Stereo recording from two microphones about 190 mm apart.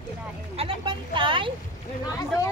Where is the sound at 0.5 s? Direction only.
30° right (ahead or behind).